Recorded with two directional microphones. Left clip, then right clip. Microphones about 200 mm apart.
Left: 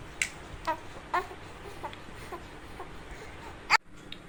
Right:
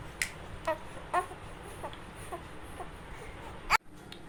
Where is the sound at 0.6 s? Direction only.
15° right (ahead or behind).